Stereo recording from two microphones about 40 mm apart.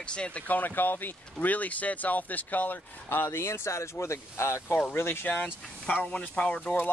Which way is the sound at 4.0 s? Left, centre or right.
Left.